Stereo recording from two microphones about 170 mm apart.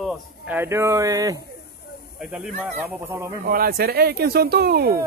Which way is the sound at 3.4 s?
60° right (ahead or behind).